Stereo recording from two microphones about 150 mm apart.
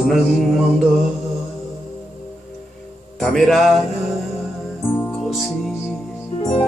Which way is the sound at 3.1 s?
5° left (ahead or behind).